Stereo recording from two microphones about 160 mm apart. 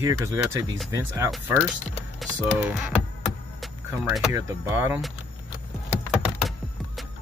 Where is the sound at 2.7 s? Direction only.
10° right (ahead or behind).